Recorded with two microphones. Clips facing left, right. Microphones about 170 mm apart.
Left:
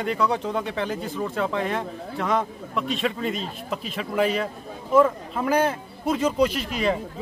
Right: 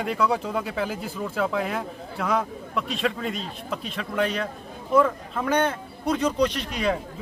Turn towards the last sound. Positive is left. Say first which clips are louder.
# left 1 dB
turn(degrees=0)  # may be behind; listen again after turning